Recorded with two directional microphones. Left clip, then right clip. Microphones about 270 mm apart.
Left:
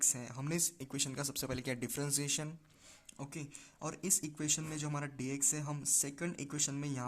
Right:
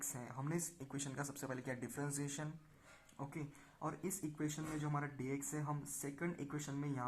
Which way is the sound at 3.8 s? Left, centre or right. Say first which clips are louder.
Left 5 dB; left.